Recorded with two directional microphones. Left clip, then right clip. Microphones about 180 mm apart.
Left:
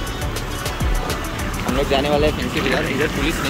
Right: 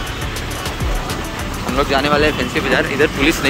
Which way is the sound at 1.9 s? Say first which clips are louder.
Right 3 dB; 10° left (ahead or behind).